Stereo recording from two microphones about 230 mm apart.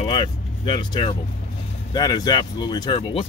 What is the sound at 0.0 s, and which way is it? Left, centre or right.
Vehicle, left.